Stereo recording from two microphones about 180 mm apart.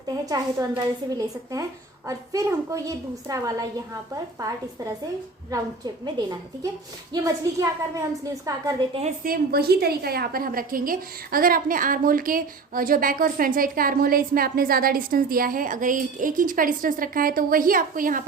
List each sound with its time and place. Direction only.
0.3 s a woman's voice: 20° right (ahead or behind)
2.0 s a woman's voice: 15° right (ahead or behind)
8.9 s a woman's voice: 35° right (ahead or behind)
9.2 s a woman's voice: 55° right (ahead or behind)